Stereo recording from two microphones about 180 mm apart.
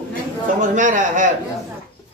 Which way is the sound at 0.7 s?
45° right (ahead or behind).